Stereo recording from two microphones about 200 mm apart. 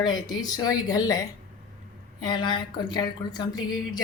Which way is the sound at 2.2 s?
20° left (ahead or behind).